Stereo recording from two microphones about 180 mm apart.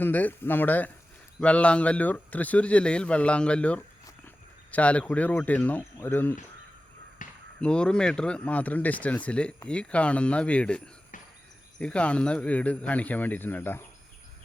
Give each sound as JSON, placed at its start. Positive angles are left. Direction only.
{"t": 0.0, "sound": "speech", "side_deg": 10}
{"t": 7.2, "sound": "basketball bounce", "side_deg": 45}
{"t": 7.6, "sound": "speech", "side_deg": 5}